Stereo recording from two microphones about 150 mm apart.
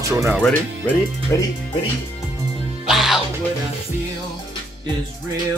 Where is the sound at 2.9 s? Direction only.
Centre (ahead or behind).